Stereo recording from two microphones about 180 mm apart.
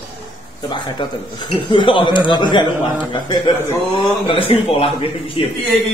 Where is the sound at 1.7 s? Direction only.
25° left (ahead or behind).